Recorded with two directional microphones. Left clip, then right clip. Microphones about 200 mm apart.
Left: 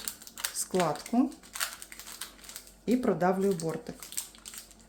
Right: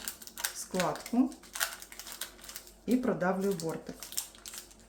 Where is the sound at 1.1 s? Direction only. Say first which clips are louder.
Left 1 dB; 40° left (ahead or behind).